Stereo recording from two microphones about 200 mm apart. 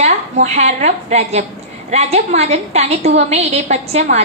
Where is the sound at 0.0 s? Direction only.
35° right (ahead or behind).